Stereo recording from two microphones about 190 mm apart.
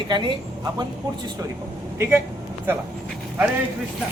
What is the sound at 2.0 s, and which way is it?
Speech, 10° right (ahead or behind).